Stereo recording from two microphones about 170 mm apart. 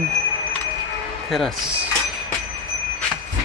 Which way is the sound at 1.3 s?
Centre (ahead or behind).